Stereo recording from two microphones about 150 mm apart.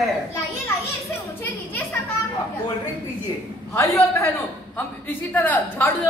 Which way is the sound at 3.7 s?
20° left (ahead or behind).